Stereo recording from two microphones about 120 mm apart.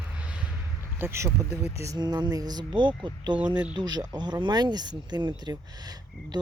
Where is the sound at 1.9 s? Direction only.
35° right (ahead or behind).